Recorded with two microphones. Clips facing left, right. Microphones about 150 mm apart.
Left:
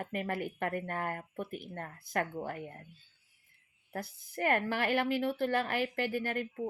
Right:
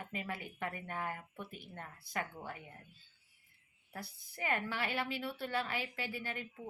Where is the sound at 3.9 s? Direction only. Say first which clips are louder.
Left 8 dB; 55° left (ahead or behind).